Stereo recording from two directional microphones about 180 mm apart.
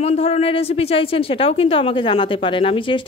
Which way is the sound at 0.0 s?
35° left (ahead or behind).